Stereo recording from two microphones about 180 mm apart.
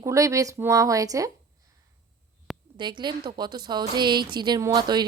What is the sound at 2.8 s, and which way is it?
A woman's voice, 25° right (ahead or behind).